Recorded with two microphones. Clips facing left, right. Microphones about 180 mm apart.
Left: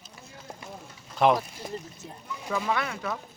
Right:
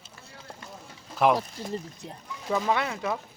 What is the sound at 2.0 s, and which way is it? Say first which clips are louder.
Speech: right 1 dB; 20° right (ahead or behind).